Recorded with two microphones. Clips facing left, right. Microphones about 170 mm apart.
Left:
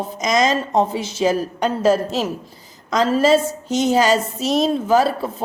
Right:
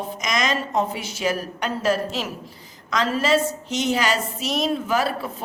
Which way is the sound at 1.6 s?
40° left (ahead or behind).